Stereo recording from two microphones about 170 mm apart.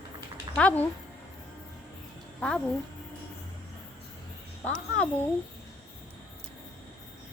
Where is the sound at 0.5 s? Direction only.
10° left (ahead or behind).